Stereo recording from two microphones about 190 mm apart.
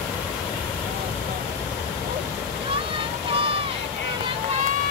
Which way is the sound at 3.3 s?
30° right (ahead or behind).